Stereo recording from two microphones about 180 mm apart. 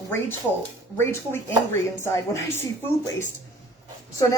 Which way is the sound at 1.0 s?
15° left (ahead or behind).